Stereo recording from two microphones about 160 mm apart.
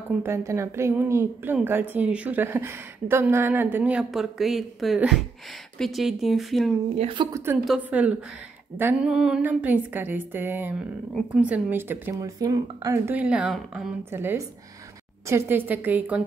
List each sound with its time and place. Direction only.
0.2 s a woman's voice: 15° right (ahead or behind); by 6.7 s centre (ahead or behind)
7.0 s a woman's voice: 30° right (ahead or behind)
7.6 s a woman's voice: 5° right (ahead or behind)